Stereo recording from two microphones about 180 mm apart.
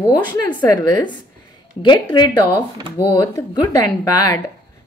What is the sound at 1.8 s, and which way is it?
A woman's voice, 25° left (ahead or behind).